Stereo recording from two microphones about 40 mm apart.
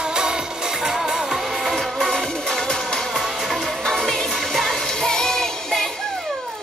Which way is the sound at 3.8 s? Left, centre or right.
Centre.